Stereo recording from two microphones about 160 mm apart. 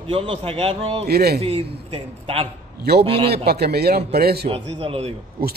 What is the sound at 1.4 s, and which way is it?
A man's voice, 40° right (ahead or behind).